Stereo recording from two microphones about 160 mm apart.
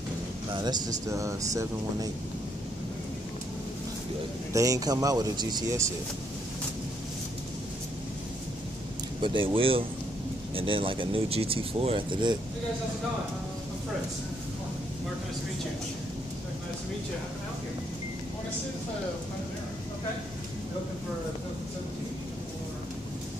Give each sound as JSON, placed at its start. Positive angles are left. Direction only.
{"t": 0.6, "sound": "speech", "side_deg": -25}
{"t": 4.5, "sound": "speech", "side_deg": -20}
{"t": 9.2, "sound": "speech", "side_deg": -30}